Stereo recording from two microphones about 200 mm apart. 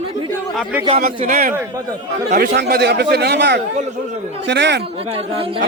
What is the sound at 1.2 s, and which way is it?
A man's voice, 40° right (ahead or behind).